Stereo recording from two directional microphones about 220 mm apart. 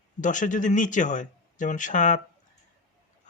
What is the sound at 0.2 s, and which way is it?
Speech, 35° left (ahead or behind).